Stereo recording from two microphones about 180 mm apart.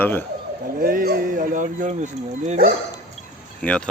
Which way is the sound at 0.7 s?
55° right (ahead or behind).